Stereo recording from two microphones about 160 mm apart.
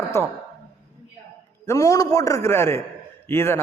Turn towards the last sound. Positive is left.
turn(degrees=15)  # may be behind; listen again after turning